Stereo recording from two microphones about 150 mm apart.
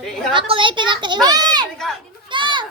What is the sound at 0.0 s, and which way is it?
Speech, centre (ahead or behind).